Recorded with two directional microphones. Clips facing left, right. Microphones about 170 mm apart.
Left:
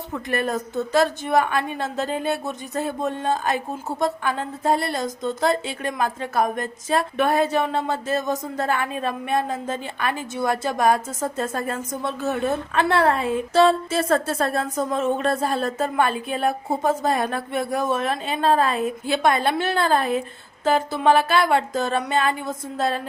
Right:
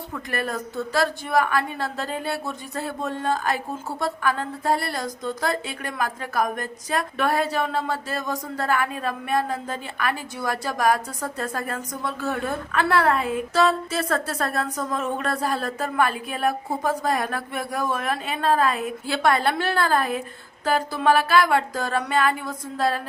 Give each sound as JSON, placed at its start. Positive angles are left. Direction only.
{"t": 0.1, "sound": "a woman's voice", "side_deg": 20}